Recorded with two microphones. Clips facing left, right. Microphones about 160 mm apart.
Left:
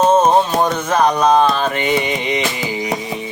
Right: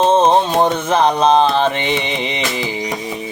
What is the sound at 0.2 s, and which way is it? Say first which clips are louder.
Mantra: right 1 dB; 25° right (ahead or behind).